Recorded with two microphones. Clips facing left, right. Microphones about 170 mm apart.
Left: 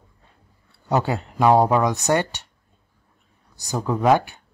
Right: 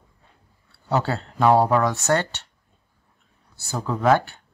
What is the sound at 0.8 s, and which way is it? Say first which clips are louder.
Speech: left 2 dB; 15° left (ahead or behind).